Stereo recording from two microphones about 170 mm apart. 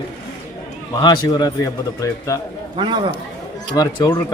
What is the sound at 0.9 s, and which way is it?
A man's voice, 25° left (ahead or behind).